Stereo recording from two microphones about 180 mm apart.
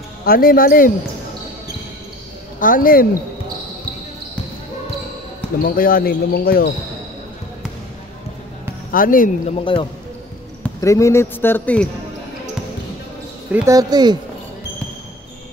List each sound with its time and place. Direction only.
0.2 s speech: 55° left (ahead or behind)
2.6 s speech: 50° left (ahead or behind)
5.8 s speech: 55° left (ahead or behind)
8.9 s speech: 50° left (ahead or behind)
10.6 s a man's voice: 15° left (ahead or behind)
13.5 s speech: 10° right (ahead or behind)
13.7 s speech: 20° right (ahead or behind)